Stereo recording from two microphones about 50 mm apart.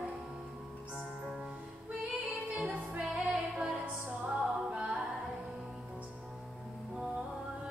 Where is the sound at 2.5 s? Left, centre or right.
Right.